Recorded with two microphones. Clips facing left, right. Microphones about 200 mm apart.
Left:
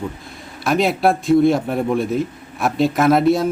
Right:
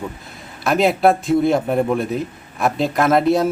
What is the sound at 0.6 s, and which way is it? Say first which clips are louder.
A man's voice: right 2 dB; centre (ahead or behind).